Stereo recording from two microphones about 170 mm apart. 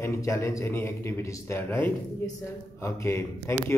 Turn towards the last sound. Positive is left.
turn(degrees=15)  # may be behind; listen again after turning